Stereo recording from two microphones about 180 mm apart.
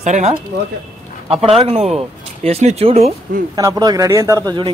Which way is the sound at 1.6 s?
35° right (ahead or behind).